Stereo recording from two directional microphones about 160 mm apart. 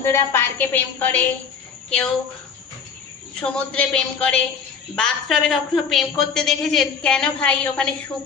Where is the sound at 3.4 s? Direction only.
5° left (ahead or behind).